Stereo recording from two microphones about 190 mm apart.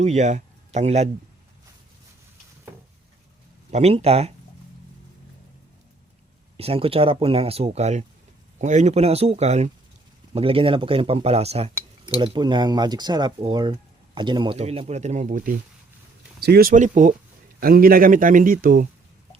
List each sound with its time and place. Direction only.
0.0 s speech: 35° right (ahead or behind)
3.7 s speech: 35° right (ahead or behind)
6.6 s a man's voice: 30° right (ahead or behind); by 18.9 s 45° right (ahead or behind)